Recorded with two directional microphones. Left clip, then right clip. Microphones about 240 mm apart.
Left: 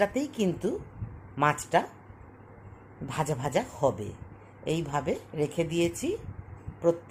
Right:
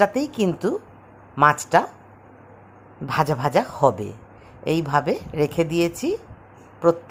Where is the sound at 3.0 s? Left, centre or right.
Centre.